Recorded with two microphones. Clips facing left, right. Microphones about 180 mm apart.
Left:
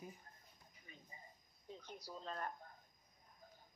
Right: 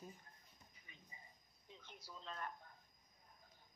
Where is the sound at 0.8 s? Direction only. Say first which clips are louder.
Left 6 dB; 40° left (ahead or behind).